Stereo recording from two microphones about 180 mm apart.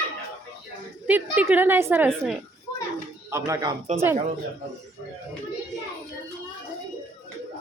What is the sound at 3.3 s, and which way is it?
Speech, 20° right (ahead or behind).